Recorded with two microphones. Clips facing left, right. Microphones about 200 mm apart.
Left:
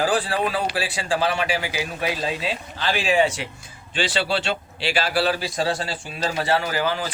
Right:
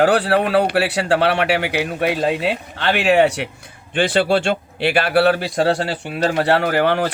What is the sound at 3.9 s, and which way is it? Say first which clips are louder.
A man's voice: right 7 dB; 55° right (ahead or behind).